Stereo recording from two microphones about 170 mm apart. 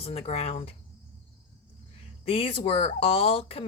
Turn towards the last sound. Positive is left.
turn(degrees=35)  # may be behind; listen again after turning